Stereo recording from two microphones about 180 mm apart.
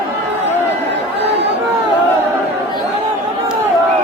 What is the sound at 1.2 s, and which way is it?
Chatter, 70° right (ahead or behind).